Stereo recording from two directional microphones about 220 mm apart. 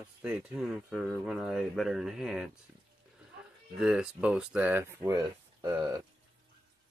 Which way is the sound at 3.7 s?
5° right (ahead or behind).